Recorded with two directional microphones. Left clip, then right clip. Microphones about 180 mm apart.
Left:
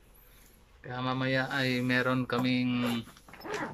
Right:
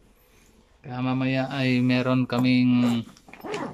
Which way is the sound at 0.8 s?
10° right (ahead or behind).